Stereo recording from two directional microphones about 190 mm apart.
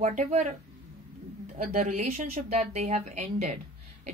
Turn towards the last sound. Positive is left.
turn(degrees=-40)  # may be behind; listen again after turning